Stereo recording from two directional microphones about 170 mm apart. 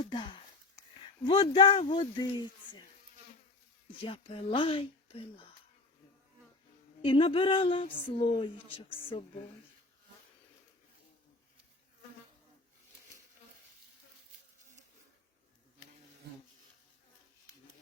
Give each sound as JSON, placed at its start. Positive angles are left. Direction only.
{"t": 0.0, "sound": "a sound", "side_deg": 30}
{"t": 1.2, "sound": "speech", "side_deg": 25}
{"t": 4.0, "sound": "speech", "side_deg": 30}
{"t": 7.0, "sound": "speech", "side_deg": 30}